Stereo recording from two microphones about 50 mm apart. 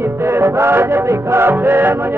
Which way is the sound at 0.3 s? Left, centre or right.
Right.